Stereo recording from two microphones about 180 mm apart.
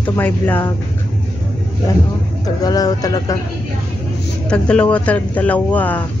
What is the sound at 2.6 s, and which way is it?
Speech, 20° left (ahead or behind).